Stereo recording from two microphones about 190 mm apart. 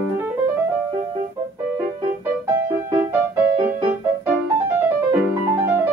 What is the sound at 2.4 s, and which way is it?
Music, 15° right (ahead or behind).